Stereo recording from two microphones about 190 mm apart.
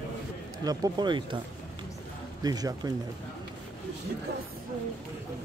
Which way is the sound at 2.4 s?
20° right (ahead or behind).